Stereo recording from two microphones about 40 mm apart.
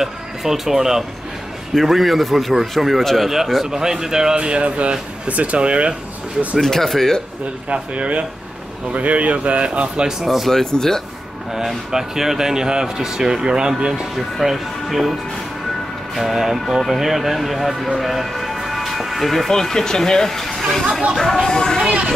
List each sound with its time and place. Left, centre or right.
0.0 s speech: centre
3.3 s speech: centre; by 5.9 s right
6.6 s speech: centre
7.7 s speech: right
10.2 s speech: centre
10.5 s speech: centre
11.5 s speech: centre
14.1 s speech: centre
16.2 s speech: centre